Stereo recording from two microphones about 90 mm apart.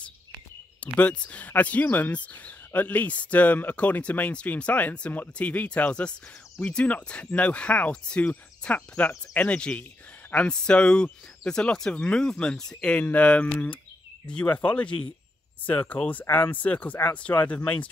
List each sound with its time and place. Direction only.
0.9 s speech: 15° left (ahead or behind)